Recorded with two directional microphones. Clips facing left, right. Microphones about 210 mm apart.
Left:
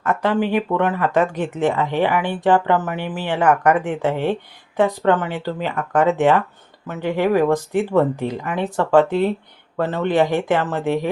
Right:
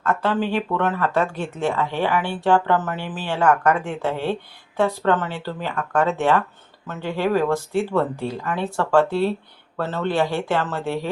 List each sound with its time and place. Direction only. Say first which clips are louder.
0.0 s speech: left 3 dB; 15° left (ahead or behind)